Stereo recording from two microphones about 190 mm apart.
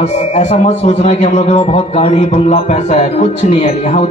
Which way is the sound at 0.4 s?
35° left (ahead or behind).